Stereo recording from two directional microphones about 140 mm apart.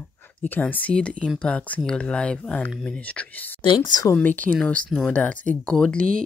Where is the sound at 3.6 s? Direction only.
35° left (ahead or behind).